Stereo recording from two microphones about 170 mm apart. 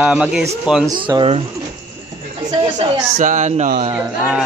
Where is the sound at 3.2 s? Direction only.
45° right (ahead or behind).